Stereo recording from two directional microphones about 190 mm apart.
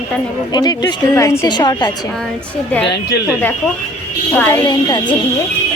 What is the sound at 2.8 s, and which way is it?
Speech, 65° left (ahead or behind).